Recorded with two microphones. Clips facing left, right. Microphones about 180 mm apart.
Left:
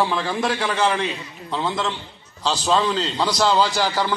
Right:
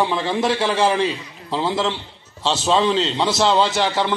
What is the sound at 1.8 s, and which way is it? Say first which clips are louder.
A man's voice: right 3 dB; 25° right (ahead or behind).